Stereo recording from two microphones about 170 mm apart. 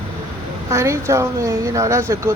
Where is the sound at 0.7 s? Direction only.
15° right (ahead or behind).